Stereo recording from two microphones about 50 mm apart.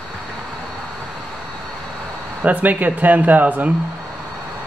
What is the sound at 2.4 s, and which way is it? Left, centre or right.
Speech, right.